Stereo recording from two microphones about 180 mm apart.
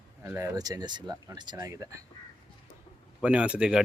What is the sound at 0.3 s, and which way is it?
Speech, 15° right (ahead or behind).